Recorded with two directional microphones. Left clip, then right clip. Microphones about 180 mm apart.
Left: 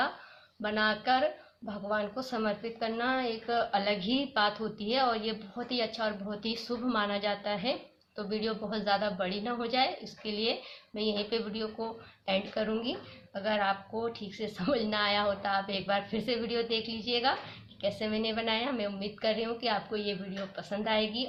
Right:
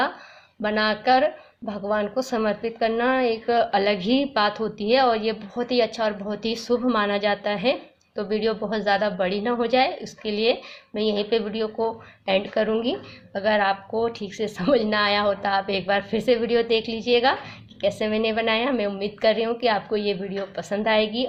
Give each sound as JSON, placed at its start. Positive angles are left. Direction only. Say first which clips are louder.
{"t": 0.6, "sound": "speech", "louder": "right 7 dB", "side_deg": -30}